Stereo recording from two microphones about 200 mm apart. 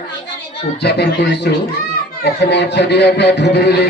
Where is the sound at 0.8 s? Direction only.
55° left (ahead or behind).